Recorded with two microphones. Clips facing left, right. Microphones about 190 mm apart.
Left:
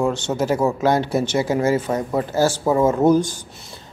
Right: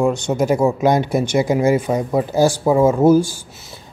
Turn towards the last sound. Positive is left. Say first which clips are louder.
# right 3 dB
turn(degrees=-10)  # may be behind; listen again after turning